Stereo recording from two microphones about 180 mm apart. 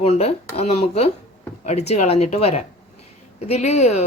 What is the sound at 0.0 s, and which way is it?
Speech, 35° left (ahead or behind).